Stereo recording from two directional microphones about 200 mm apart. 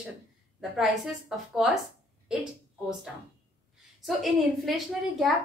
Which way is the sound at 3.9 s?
Centre (ahead or behind).